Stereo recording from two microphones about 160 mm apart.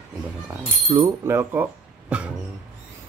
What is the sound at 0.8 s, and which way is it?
Speech, 20° right (ahead or behind).